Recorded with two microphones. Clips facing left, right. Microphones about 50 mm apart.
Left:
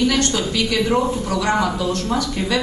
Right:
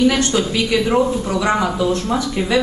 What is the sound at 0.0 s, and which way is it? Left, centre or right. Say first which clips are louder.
Speech: right 3 dB; centre.